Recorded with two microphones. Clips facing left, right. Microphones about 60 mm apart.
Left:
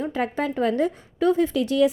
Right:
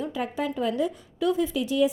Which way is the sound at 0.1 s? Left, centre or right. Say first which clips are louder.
Left 4 dB; left.